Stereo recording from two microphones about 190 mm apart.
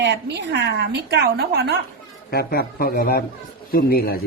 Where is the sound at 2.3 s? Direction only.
55° left (ahead or behind).